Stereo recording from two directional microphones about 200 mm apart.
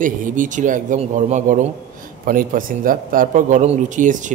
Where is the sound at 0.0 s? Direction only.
40° right (ahead or behind).